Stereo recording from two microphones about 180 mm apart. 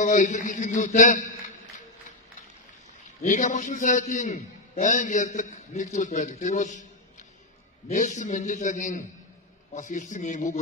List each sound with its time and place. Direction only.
0.0 s a man's voice: 45° left (ahead or behind)
3.2 s a man's voice: 45° left (ahead or behind)
7.9 s a man's voice: 45° left (ahead or behind)